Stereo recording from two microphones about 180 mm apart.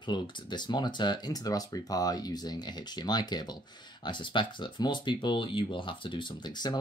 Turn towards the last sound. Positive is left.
turn(degrees=25)  # may be behind; listen again after turning